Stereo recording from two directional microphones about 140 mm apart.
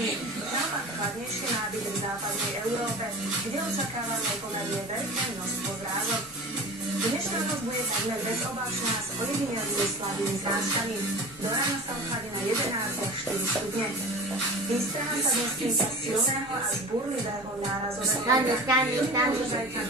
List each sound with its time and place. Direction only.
18.3 s a woman's voice: 25° right (ahead or behind)